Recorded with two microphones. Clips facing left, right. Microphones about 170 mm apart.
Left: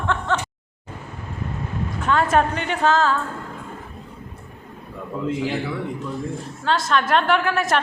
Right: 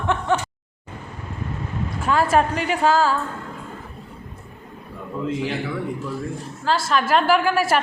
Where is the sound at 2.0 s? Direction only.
5° right (ahead or behind).